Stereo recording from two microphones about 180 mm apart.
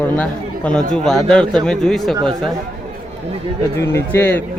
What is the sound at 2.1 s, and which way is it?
Speech, 25° right (ahead or behind).